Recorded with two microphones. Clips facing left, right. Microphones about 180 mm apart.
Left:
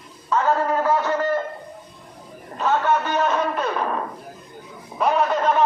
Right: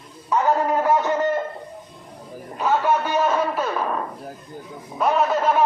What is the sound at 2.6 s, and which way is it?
A man's voice, 10° right (ahead or behind).